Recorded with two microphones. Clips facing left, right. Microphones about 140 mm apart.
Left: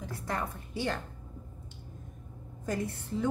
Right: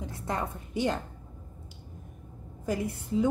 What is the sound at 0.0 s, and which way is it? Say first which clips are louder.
A woman's voice: right 2 dB; 25° right (ahead or behind).